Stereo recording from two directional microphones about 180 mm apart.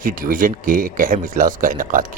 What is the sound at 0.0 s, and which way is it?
Speech, 50° right (ahead or behind).